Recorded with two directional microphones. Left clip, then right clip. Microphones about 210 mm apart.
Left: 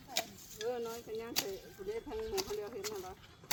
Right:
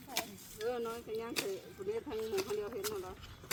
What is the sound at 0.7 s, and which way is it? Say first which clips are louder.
Speech: right 1 dB; 40° right (ahead or behind).